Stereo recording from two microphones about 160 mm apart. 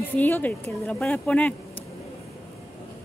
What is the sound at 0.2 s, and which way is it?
Speech, 10° left (ahead or behind).